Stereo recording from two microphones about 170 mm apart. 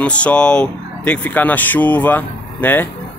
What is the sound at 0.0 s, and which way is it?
A man's voice, 5° left (ahead or behind).